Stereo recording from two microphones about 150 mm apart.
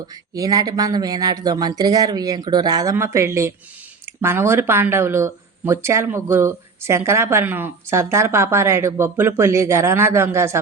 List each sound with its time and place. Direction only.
0.3 s speech: 25° right (ahead or behind)